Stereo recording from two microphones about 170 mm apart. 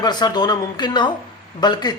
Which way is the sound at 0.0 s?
25° left (ahead or behind).